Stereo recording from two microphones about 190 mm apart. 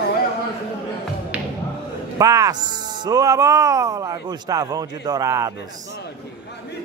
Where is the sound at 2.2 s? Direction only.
15° right (ahead or behind).